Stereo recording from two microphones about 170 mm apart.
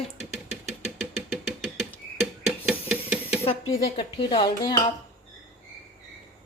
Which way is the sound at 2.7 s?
10° right (ahead or behind).